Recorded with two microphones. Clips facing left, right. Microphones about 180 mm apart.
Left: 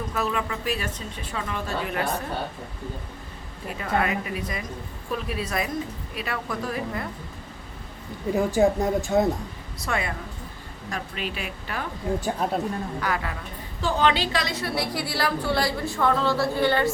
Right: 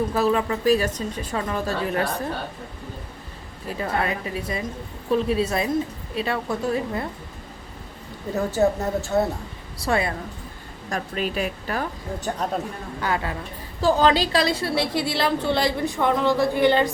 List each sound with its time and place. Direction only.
0.1 s a woman's voice: 35° right (ahead or behind)
3.7 s a woman's voice: 30° right (ahead or behind)
8.3 s speech: 15° left (ahead or behind)
9.8 s a woman's voice: 35° right (ahead or behind)
12.4 s speech: 5° left (ahead or behind)
13.0 s a woman's voice: 25° right (ahead or behind)
13.8 s a woman's voice: 35° right (ahead or behind); by 16.9 s 15° right (ahead or behind)